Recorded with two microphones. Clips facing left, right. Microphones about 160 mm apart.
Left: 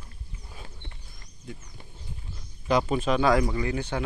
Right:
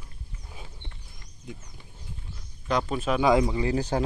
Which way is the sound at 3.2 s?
20° right (ahead or behind).